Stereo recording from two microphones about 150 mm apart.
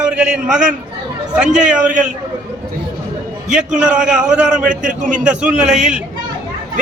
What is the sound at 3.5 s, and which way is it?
A man's voice, 5° right (ahead or behind).